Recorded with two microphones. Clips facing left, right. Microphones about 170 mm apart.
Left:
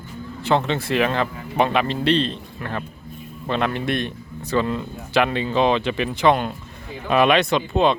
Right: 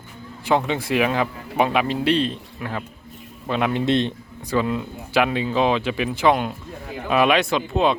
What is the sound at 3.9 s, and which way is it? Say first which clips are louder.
Speech: right 4 dB; 20° right (ahead or behind).